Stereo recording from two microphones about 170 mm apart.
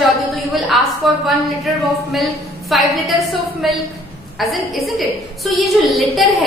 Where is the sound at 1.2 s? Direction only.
Centre (ahead or behind).